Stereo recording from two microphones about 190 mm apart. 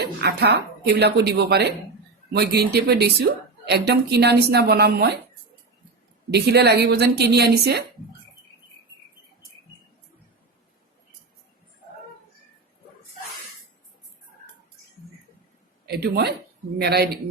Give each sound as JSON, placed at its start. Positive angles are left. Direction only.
{"t": 0.0, "sound": "speech", "side_deg": -60}
{"t": 6.3, "sound": "speech", "side_deg": -60}
{"t": 15.9, "sound": "speech", "side_deg": -60}